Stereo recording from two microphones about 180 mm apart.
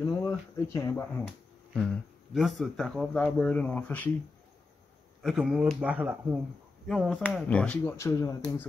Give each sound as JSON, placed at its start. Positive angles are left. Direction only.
{"t": 0.0, "sound": "speech", "side_deg": 15}
{"t": 1.2, "sound": "speech", "side_deg": 5}
{"t": 5.2, "sound": "speech", "side_deg": -5}